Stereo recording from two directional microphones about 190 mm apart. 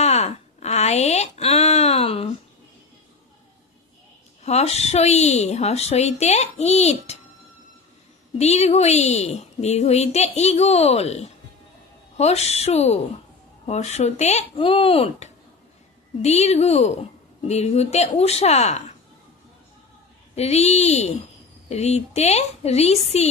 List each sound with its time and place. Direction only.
0.0 s a sound: 35° left (ahead or behind)
4.4 s a woman's voice: 35° left (ahead or behind)
8.4 s a woman's voice: 35° left (ahead or behind)
20.3 s a woman's voice: 35° left (ahead or behind)